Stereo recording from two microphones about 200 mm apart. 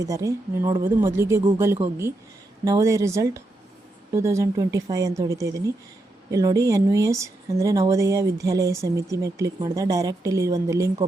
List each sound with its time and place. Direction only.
0.0 s speech: 15° right (ahead or behind)